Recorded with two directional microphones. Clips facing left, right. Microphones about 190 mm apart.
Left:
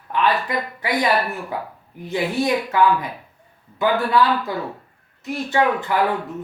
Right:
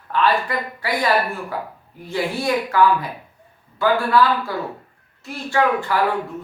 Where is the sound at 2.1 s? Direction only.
20° left (ahead or behind).